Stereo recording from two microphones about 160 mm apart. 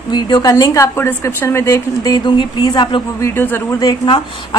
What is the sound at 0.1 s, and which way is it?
A man's voice, 25° left (ahead or behind).